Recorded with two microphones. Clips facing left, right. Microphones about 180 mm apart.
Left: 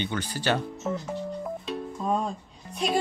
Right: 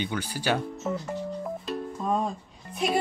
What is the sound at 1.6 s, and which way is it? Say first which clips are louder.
Music: even; centre (ahead or behind).